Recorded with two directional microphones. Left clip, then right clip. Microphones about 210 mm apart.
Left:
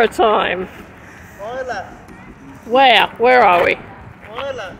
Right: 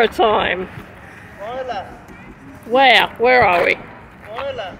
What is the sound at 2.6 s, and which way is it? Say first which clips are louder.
A woman's voice: left 1 dB; 10° left (ahead or behind).